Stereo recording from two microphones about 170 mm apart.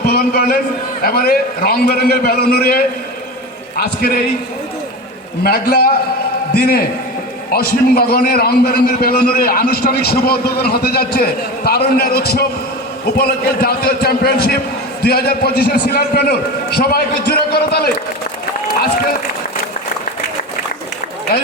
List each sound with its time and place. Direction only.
0.0 s a sound: 65° left (ahead or behind)
1.0 s a man's voice: 65° left (ahead or behind)
5.4 s a man's voice: 65° left (ahead or behind)